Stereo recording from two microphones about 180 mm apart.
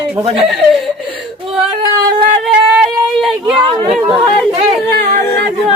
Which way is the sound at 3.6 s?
30° right (ahead or behind).